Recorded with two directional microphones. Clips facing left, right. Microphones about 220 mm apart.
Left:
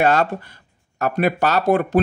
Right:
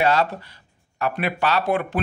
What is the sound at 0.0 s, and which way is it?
Speech, 50° left (ahead or behind).